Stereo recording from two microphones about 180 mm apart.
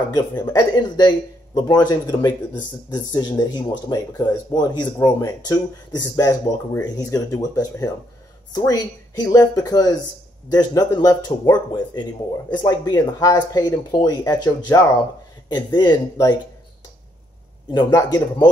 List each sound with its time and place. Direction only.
0.4 s speech: 20° left (ahead or behind)
17.8 s speech: 20° left (ahead or behind)